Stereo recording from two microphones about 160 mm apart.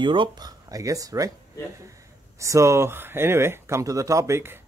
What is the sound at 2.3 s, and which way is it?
Speech, 20° right (ahead or behind).